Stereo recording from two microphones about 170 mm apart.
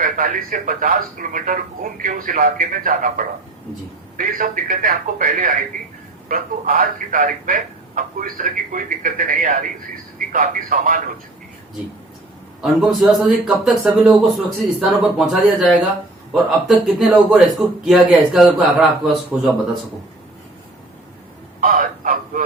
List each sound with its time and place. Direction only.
0.0 s speech: 55° right (ahead or behind)
12.6 s speech: centre (ahead or behind)
21.6 s a sound: 50° right (ahead or behind)